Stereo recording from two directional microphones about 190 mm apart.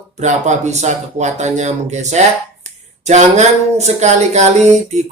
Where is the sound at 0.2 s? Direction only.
40° right (ahead or behind).